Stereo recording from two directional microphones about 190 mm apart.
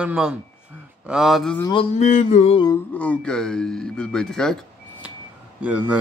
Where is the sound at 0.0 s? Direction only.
5° right (ahead or behind).